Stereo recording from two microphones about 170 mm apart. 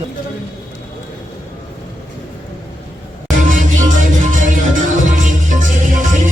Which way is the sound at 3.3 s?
50° right (ahead or behind).